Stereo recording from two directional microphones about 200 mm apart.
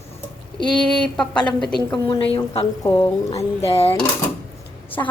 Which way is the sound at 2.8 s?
15° left (ahead or behind).